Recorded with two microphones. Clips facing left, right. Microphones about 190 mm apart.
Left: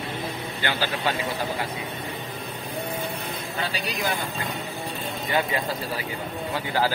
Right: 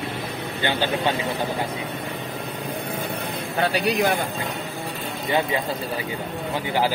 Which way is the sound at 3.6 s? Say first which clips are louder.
Right 9 dB; 65° right (ahead or behind).